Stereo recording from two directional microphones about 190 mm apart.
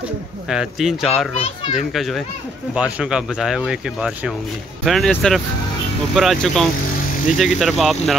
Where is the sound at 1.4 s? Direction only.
30° left (ahead or behind).